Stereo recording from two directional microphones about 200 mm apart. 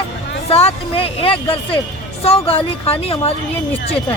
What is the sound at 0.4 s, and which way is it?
Speech, 30° left (ahead or behind).